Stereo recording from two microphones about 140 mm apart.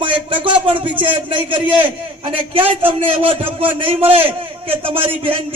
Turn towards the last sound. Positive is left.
turn(degrees=-40)  # may be behind; listen again after turning